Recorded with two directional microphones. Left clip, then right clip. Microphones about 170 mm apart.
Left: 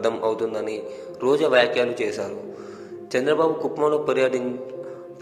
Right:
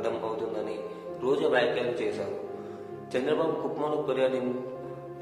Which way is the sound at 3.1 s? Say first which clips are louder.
Left 7 dB; 35° left (ahead or behind).